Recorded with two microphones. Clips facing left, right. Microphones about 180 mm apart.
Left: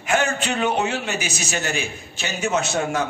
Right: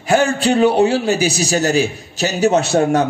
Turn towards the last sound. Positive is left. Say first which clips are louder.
# right 8 dB
turn(degrees=-35)  # may be behind; listen again after turning